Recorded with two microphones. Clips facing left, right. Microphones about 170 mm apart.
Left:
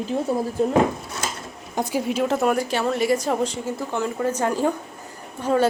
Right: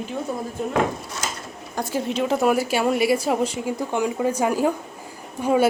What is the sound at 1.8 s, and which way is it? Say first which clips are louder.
Speech: left 1 dB; 10° left (ahead or behind).